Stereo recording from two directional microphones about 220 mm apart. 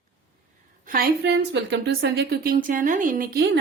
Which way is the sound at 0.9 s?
50° right (ahead or behind).